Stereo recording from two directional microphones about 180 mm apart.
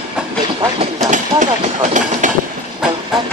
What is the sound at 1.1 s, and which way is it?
Engine, 45° right (ahead or behind).